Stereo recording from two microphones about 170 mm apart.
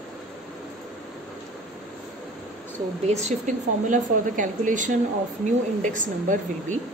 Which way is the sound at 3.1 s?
45° right (ahead or behind).